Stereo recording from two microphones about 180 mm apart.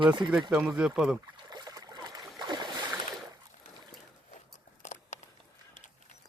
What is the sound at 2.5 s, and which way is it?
Boat, 25° right (ahead or behind).